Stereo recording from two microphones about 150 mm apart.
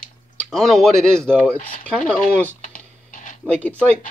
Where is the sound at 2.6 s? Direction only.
60° left (ahead or behind).